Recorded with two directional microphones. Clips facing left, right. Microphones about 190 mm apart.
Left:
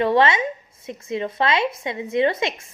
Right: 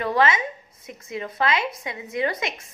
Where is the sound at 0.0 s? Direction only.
25° left (ahead or behind).